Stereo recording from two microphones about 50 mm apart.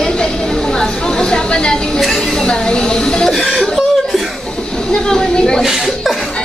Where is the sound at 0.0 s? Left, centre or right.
Centre.